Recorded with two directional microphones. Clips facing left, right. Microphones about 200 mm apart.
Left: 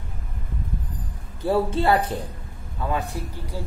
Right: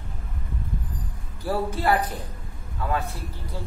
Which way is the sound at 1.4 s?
25° left (ahead or behind).